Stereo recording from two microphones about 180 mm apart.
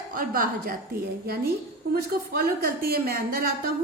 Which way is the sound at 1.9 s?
60° right (ahead or behind).